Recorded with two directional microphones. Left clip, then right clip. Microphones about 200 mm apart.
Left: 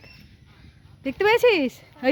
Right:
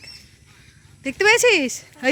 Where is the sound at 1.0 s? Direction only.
5° left (ahead or behind).